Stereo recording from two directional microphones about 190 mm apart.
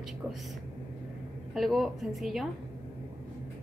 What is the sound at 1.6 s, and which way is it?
Speech, centre (ahead or behind).